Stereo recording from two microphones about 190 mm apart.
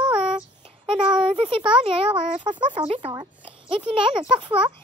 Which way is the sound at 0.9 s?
25° right (ahead or behind).